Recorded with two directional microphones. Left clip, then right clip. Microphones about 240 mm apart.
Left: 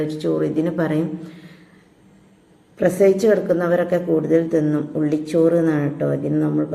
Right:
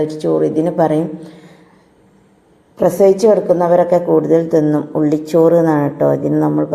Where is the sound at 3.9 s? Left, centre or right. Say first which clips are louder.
Right 7 dB; centre.